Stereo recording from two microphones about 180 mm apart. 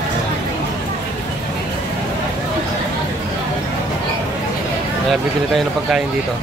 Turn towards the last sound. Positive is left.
turn(degrees=0)  # may be behind; listen again after turning